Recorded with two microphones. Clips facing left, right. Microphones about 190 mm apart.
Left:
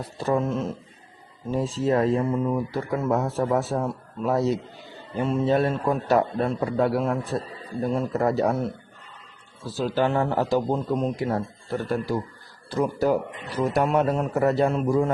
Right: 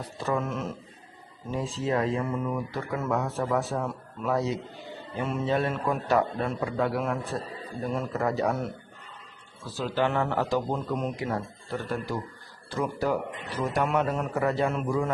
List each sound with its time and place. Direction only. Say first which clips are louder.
0.3 s speech: left 5 dB; 30° left (ahead or behind)
9.7 s speech: left 4 dB; 35° left (ahead or behind)